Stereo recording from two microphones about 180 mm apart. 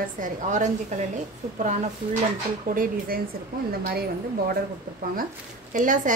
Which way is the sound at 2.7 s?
50° right (ahead or behind).